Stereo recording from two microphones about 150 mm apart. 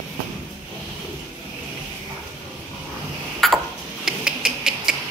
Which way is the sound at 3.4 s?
Centre (ahead or behind).